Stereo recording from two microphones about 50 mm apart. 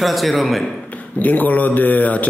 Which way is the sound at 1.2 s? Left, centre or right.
Left.